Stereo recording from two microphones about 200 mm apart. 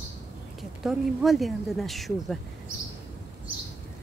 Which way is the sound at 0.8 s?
Centre (ahead or behind).